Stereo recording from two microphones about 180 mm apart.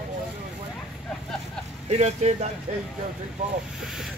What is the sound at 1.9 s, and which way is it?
Speech, 40° right (ahead or behind).